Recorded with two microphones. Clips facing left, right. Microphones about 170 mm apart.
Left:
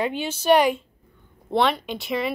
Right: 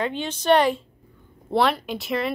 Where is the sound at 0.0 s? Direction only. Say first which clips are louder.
Left 1 dB; 10° left (ahead or behind).